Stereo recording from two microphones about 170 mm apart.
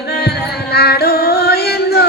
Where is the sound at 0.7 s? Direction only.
70° left (ahead or behind).